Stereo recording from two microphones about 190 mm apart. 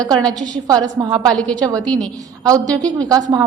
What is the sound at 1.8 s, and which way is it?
Speech, 5° left (ahead or behind).